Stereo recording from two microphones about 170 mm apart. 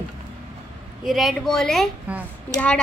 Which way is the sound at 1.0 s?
Centre (ahead or behind).